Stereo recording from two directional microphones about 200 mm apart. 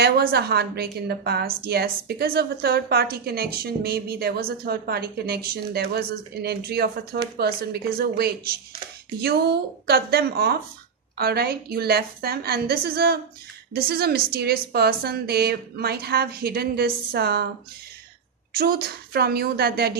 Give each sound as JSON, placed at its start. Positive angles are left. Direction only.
{"t": 0.0, "sound": "a woman's voice", "side_deg": -50}
{"t": 18.5, "sound": "a woman's voice", "side_deg": -50}